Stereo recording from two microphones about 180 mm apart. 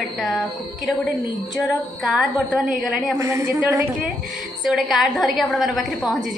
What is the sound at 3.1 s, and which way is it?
Speech, 20° right (ahead or behind).